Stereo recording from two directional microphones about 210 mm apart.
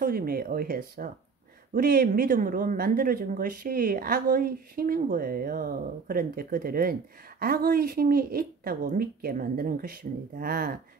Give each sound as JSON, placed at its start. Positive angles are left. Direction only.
{"t": 0.0, "sound": "speech", "side_deg": -45}